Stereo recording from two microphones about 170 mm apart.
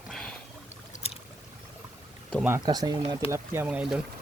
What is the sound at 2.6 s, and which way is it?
Speech, 25° right (ahead or behind).